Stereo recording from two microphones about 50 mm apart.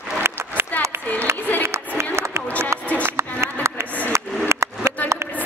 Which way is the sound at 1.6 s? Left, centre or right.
Right.